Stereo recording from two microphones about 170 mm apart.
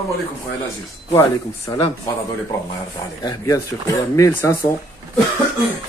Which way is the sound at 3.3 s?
20° left (ahead or behind).